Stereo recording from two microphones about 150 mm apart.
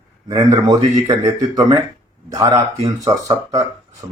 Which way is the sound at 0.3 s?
25° right (ahead or behind).